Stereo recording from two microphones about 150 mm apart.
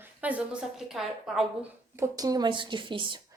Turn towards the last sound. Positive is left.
turn(degrees=-35)  # may be behind; listen again after turning